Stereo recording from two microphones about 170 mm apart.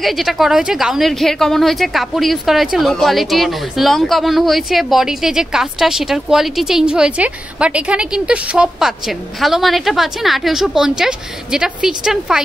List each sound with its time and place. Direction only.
0.0 s speech: centre (ahead or behind)